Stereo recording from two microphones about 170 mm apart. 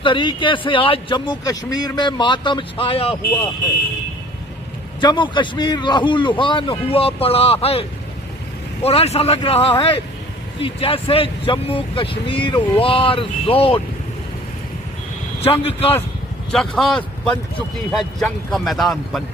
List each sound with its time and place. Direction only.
0.0 s speech: 30° left (ahead or behind)
5.0 s speech: 25° left (ahead or behind)
8.8 s speech: 35° left (ahead or behind)
15.4 s speech: 35° left (ahead or behind)
16.5 s speech: centre (ahead or behind)
18.5 s speech: centre (ahead or behind)